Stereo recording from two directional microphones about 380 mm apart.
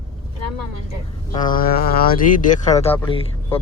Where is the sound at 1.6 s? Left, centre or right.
Left.